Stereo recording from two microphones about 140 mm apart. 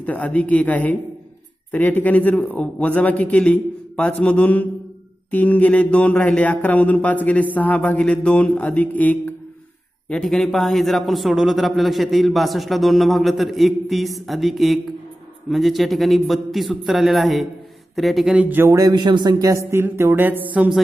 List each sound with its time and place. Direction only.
0.0 s a man's voice: 10° left (ahead or behind); by 20.8 s 10° right (ahead or behind)